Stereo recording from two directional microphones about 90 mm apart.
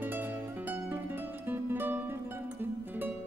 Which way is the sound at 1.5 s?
20° right (ahead or behind).